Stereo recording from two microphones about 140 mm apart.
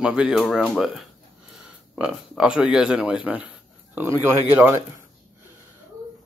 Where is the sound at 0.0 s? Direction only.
5° right (ahead or behind).